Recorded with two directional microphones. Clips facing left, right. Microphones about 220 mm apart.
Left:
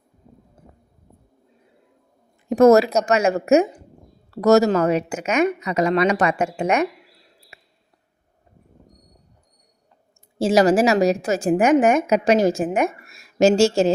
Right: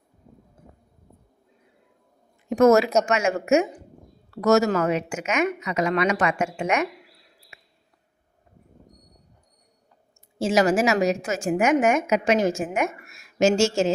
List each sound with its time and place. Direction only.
2.5 s a woman's voice: 35° left (ahead or behind)
10.3 s a woman's voice: 35° left (ahead or behind)